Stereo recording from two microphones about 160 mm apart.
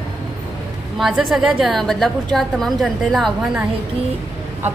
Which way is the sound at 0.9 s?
Centre (ahead or behind).